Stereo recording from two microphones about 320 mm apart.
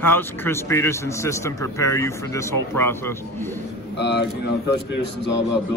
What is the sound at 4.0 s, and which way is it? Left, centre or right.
Speech, left.